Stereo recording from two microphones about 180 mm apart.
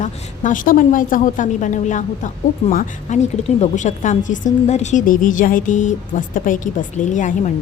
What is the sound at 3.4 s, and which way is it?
A woman's voice, 40° left (ahead or behind).